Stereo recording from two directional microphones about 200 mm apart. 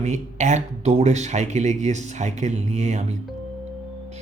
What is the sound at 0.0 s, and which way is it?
Speech, 35° right (ahead or behind).